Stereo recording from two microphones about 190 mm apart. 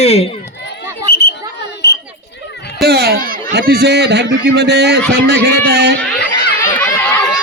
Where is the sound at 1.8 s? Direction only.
65° left (ahead or behind).